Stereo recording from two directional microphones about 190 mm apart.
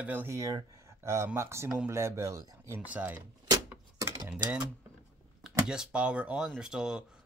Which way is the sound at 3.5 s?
15° right (ahead or behind).